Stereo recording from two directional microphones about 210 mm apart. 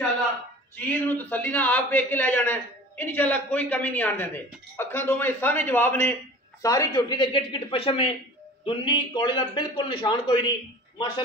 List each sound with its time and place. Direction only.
0.7 s a man's voice: 10° left (ahead or behind)